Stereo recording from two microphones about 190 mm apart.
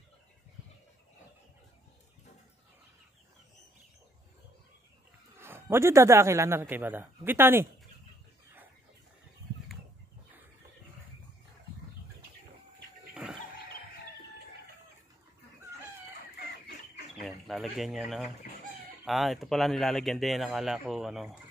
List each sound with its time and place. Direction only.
5.4 s a man's voice: 10° right (ahead or behind)
13.1 s music: centre (ahead or behind)
16.3 s chicken: 60° left (ahead or behind)
17.2 s a sound: centre (ahead or behind)
19.0 s speech: centre (ahead or behind)